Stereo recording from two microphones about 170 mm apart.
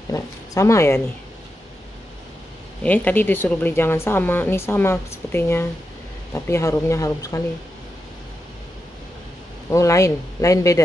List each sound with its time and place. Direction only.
0.1 s a woman's voice: 20° left (ahead or behind)
2.8 s a woman's voice: 10° left (ahead or behind)
9.7 s speech: 20° left (ahead or behind)